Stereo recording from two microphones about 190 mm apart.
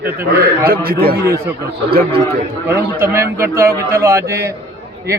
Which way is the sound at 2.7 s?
15° right (ahead or behind).